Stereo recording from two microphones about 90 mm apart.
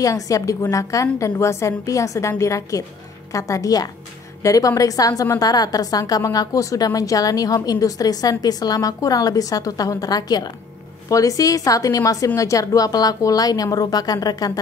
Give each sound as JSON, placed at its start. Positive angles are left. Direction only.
{"t": 0.0, "sound": "a woman's voice", "side_deg": 35}